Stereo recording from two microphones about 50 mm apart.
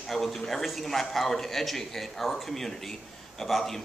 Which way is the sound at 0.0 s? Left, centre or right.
Centre.